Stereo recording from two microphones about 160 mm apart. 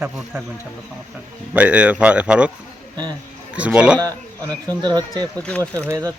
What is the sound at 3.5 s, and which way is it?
Speech, 5° right (ahead or behind).